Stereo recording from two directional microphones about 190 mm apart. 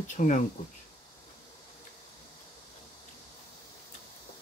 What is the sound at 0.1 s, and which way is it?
Speech, 40° left (ahead or behind).